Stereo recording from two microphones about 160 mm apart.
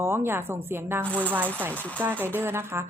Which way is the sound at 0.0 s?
15° right (ahead or behind).